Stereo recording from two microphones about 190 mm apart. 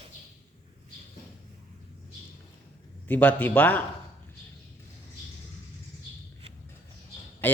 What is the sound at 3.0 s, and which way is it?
Speech, 10° left (ahead or behind).